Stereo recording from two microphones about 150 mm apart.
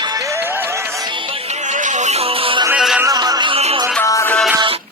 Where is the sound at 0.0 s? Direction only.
25° right (ahead or behind).